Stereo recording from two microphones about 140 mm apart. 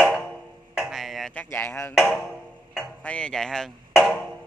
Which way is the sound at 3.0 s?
10° left (ahead or behind).